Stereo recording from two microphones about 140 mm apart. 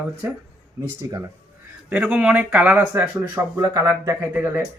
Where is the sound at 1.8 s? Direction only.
10° right (ahead or behind).